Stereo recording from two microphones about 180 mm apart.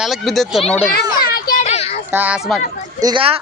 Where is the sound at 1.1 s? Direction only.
55° left (ahead or behind); by 2.0 s 35° left (ahead or behind).